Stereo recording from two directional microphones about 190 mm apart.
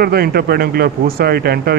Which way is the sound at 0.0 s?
55° right (ahead or behind).